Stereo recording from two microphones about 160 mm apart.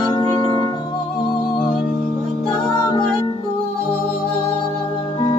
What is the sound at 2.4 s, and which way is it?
Music, 25° left (ahead or behind).